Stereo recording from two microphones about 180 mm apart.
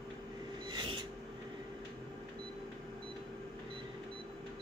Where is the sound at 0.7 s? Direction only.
25° right (ahead or behind).